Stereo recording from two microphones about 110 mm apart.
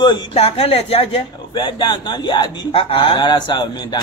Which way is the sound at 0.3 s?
60° left (ahead or behind).